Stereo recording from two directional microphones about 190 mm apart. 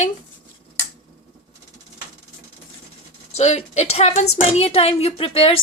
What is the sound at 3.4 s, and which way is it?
A woman's voice, 35° left (ahead or behind).